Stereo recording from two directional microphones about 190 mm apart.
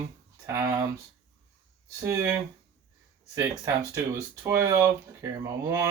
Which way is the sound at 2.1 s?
15° right (ahead or behind).